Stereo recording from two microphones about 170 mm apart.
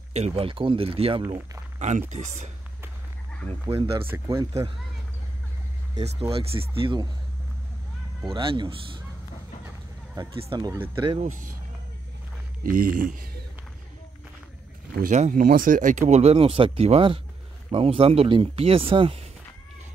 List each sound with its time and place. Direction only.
0.1 s speech: 35° right (ahead or behind)
1.8 s speech: 45° right (ahead or behind)
3.6 s speech: 15° right (ahead or behind)
6.3 s speech: 35° right (ahead or behind)
8.3 s speech: 30° right (ahead or behind)
10.1 s speech: 20° right (ahead or behind)
11.1 s speech: 50° right (ahead or behind)
12.6 s speech: 55° right (ahead or behind)
15.0 s speech: 50° right (ahead or behind); by 19.2 s 30° right (ahead or behind)